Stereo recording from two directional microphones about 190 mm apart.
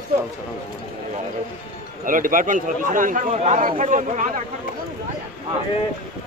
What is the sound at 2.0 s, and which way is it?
A man's voice, 45° right (ahead or behind).